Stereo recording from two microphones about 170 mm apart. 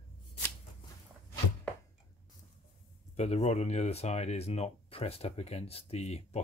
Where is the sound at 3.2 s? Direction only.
40° left (ahead or behind).